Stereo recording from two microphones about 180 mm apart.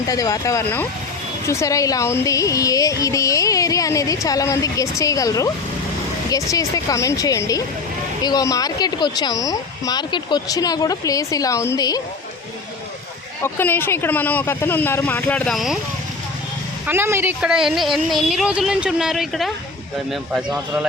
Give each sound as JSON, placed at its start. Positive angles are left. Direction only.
{"t": 0.1, "sound": "speech", "side_deg": 20}
{"t": 13.4, "sound": "speech", "side_deg": 10}
{"t": 16.8, "sound": "speech", "side_deg": -10}